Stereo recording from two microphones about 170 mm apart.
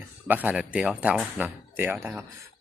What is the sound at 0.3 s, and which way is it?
Speech, 10° right (ahead or behind).